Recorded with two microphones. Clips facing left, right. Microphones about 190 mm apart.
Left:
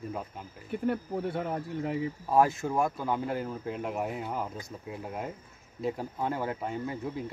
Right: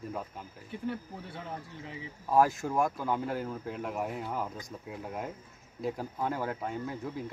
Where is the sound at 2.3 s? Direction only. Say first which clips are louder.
Even; 5° left (ahead or behind).